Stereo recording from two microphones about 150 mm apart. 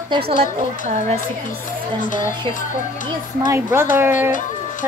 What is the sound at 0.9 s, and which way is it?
Speech, 50° right (ahead or behind).